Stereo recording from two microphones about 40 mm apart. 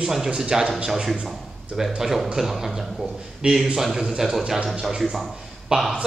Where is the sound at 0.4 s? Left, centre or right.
Centre.